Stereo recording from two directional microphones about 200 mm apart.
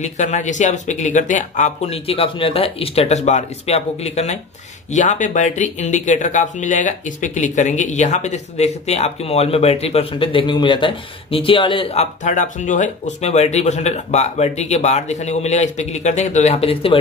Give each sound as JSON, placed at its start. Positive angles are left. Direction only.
{"t": 0.0, "sound": "speech", "side_deg": 35}